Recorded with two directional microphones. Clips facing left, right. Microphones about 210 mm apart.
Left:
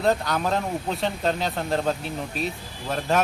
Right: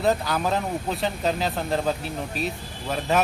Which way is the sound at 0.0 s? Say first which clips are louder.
Even; 5° right (ahead or behind).